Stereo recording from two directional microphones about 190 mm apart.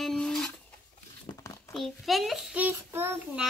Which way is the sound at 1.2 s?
15° left (ahead or behind).